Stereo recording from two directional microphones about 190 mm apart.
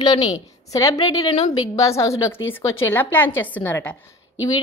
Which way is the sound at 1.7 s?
15° left (ahead or behind).